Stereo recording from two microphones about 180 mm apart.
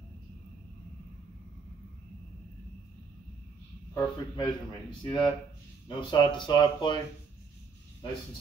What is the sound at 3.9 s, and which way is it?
Speech, 25° left (ahead or behind).